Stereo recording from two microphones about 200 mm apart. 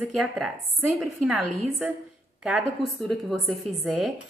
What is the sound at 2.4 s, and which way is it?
A woman's voice, 5° right (ahead or behind).